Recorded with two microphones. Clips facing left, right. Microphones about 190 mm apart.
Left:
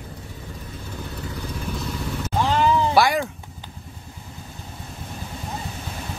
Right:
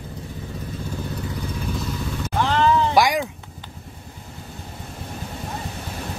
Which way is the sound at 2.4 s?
15° left (ahead or behind).